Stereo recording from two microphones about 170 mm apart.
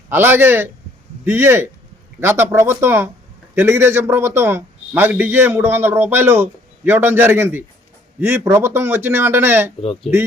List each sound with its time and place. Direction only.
0.1 s a man's voice: 15° right (ahead or behind)